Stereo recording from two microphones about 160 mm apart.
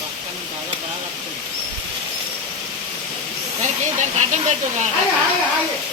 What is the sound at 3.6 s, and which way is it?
Speech, 50° right (ahead or behind).